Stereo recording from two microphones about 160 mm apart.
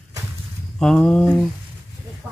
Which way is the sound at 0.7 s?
5° left (ahead or behind).